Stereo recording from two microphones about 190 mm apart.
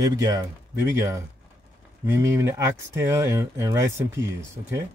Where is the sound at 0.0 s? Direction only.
15° right (ahead or behind).